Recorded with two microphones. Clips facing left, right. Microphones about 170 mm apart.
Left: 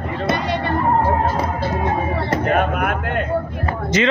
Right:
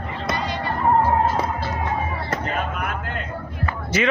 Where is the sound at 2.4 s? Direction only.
60° left (ahead or behind).